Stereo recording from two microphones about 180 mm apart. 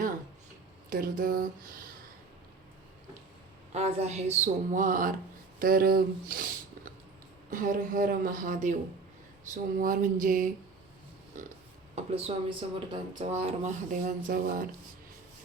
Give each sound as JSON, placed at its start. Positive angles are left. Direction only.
{"t": 0.9, "sound": "a woman's voice", "side_deg": -50}
{"t": 3.7, "sound": "a woman's voice", "side_deg": -35}
{"t": 7.5, "sound": "a woman's voice", "side_deg": -50}
{"t": 9.7, "sound": "a woman's voice", "side_deg": -50}